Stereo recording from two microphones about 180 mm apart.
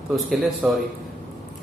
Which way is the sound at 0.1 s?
Centre (ahead or behind).